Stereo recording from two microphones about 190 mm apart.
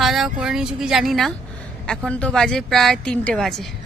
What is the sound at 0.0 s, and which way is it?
Speech, centre (ahead or behind).